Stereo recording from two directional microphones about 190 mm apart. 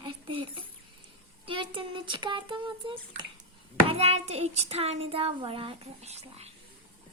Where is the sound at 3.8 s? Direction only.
35° right (ahead or behind).